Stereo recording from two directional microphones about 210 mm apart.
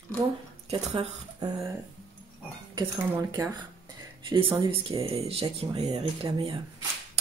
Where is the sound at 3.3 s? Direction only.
20° right (ahead or behind).